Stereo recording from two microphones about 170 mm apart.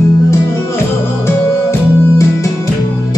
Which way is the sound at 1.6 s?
20° left (ahead or behind).